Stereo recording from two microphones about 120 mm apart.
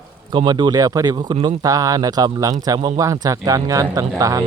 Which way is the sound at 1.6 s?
30° right (ahead or behind).